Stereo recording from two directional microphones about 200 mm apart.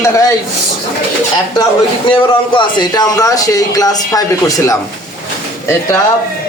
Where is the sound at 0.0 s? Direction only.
15° left (ahead or behind).